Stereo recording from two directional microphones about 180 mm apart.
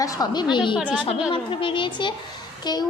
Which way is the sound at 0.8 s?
5° right (ahead or behind).